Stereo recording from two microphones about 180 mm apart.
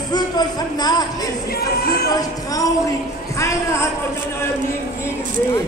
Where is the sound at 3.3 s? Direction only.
15° left (ahead or behind).